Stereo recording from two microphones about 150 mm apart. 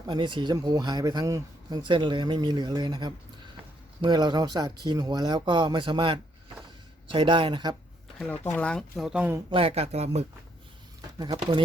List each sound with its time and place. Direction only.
0.1 s speech: 30° right (ahead or behind)
8.5 s speech: 5° left (ahead or behind)
9.5 s speech: 40° right (ahead or behind)
11.2 s speech: 30° right (ahead or behind)